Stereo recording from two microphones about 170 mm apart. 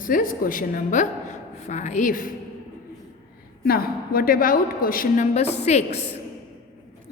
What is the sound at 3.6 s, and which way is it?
A woman's voice, 60° left (ahead or behind).